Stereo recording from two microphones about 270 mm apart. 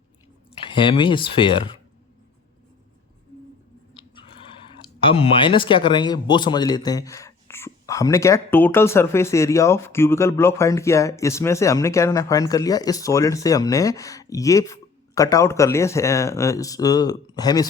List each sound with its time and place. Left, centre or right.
0.7 s speech: centre
4.9 s speech: centre